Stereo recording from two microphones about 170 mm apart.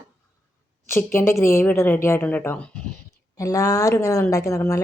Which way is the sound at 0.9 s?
15° left (ahead or behind).